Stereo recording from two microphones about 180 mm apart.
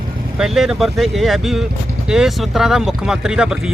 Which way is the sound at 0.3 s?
Centre (ahead or behind).